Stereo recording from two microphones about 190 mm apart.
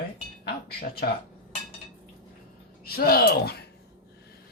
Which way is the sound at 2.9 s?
55° left (ahead or behind).